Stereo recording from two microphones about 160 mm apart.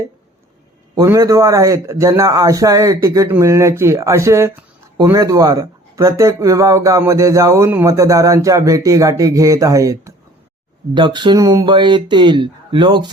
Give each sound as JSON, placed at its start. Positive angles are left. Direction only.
{"t": 0.9, "sound": "speech", "side_deg": -20}